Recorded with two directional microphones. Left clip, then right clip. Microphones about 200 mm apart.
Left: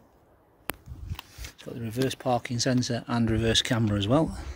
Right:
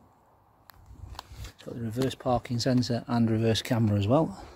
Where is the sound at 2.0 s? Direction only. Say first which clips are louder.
Left 1 dB; centre (ahead or behind).